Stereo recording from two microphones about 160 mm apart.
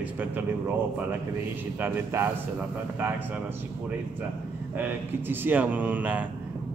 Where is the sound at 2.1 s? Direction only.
15° right (ahead or behind).